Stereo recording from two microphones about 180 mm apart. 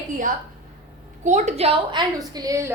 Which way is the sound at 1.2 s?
40° right (ahead or behind).